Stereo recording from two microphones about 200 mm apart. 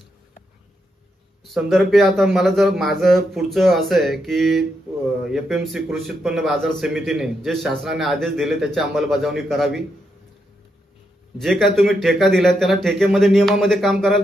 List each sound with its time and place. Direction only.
1.4 s a man's voice: centre (ahead or behind)
11.3 s a man's voice: centre (ahead or behind)